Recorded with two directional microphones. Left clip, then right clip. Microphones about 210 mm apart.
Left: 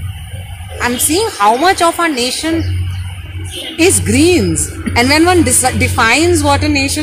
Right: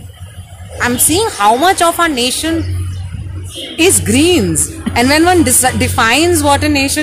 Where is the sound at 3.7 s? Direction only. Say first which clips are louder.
Even; 15° right (ahead or behind).